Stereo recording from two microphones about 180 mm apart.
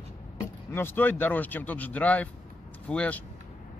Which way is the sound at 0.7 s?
10° left (ahead or behind).